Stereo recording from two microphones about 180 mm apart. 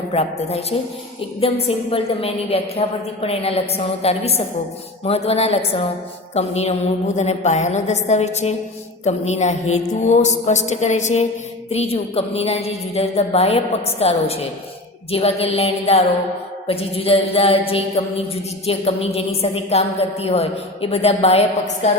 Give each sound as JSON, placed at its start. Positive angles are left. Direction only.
{"t": 0.1, "sound": "a woman's voice", "side_deg": 35}